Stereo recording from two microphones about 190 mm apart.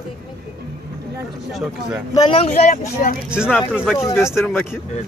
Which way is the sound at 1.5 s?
5° right (ahead or behind).